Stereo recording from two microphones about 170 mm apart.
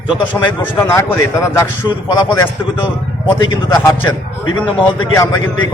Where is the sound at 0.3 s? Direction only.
15° left (ahead or behind).